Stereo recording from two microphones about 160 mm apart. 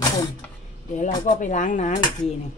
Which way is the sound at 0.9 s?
50° left (ahead or behind).